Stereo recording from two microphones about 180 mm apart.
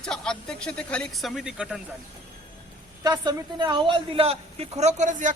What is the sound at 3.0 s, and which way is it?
A man's voice, 25° right (ahead or behind).